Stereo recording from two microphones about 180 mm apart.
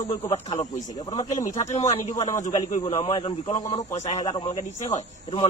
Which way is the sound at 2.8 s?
35° left (ahead or behind).